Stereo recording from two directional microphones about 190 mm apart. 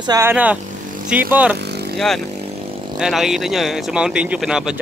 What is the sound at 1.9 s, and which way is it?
Speech, centre (ahead or behind).